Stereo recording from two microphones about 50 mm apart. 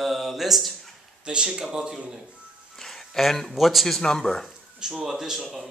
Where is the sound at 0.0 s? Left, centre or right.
Centre.